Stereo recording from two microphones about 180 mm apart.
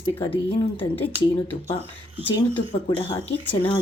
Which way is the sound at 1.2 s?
30° left (ahead or behind).